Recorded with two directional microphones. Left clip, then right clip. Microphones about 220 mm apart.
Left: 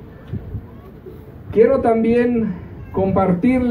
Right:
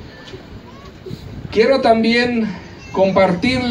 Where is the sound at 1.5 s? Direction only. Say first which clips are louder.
Right 1 dB; 40° right (ahead or behind).